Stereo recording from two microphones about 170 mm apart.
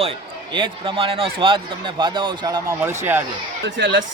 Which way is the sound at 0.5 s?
30° right (ahead or behind).